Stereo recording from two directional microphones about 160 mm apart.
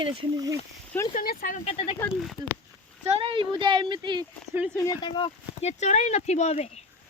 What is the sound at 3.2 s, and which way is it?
Speech, 30° right (ahead or behind).